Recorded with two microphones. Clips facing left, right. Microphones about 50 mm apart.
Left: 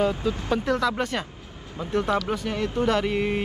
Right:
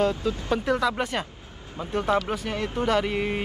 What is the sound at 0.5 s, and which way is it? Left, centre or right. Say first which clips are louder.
Speech: even; centre.